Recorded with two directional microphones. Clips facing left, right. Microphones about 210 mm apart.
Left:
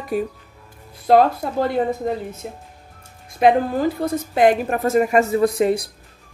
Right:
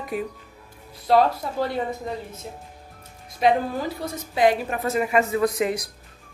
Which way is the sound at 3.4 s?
50° left (ahead or behind).